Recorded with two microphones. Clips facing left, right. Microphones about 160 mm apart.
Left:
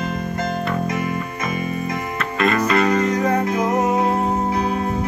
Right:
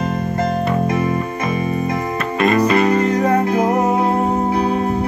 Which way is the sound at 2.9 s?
30° right (ahead or behind).